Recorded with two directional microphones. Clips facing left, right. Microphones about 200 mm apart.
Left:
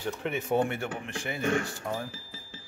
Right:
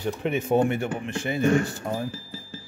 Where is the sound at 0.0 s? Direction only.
20° right (ahead or behind).